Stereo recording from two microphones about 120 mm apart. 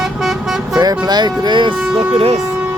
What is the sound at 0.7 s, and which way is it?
Music, 35° right (ahead or behind).